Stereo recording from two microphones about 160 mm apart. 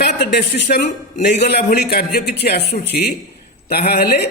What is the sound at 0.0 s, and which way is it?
A man's voice, 90° left.